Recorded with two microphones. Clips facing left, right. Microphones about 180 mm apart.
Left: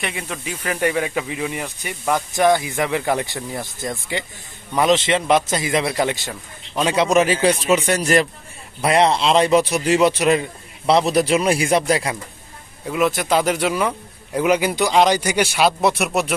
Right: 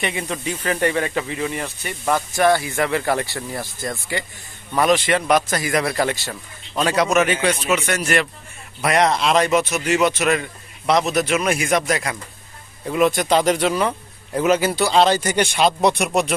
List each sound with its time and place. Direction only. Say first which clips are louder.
0.0 s a man's voice: right 3 dB; centre (ahead or behind); by 7.1 s 20° left (ahead or behind)
7.1 s a man's voice: left 2 dB; 30° left (ahead or behind)
12.8 s speech: right 2 dB; 5° left (ahead or behind)